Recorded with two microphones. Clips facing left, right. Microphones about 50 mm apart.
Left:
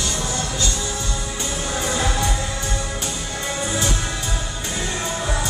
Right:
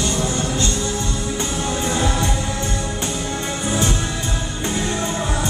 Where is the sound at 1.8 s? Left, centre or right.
Right.